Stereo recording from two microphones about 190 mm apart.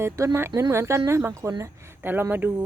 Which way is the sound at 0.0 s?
15° right (ahead or behind).